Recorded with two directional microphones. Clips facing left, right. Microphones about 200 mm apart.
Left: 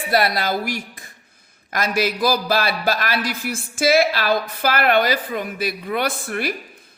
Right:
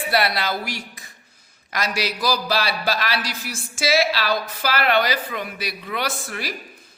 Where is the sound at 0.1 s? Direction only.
45° left (ahead or behind).